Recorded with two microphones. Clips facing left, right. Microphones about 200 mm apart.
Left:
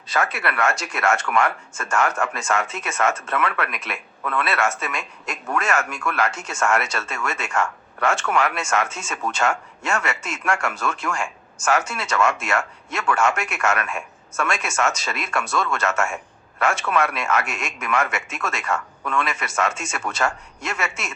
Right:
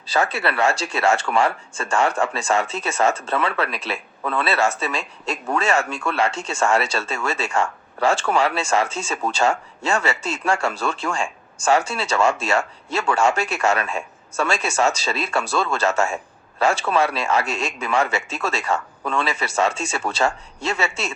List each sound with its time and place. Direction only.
0.1 s speech: 30° right (ahead or behind)